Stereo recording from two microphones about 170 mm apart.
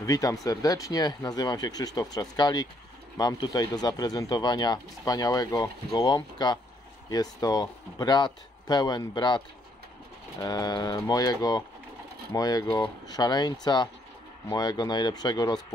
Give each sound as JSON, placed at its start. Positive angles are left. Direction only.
{"t": 0.0, "sound": "speech", "side_deg": 20}
{"t": 10.4, "sound": "speech", "side_deg": 25}